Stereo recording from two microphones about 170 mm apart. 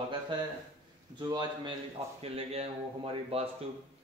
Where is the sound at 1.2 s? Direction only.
25° right (ahead or behind).